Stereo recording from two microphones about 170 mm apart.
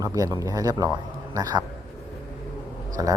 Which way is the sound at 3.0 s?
20° right (ahead or behind).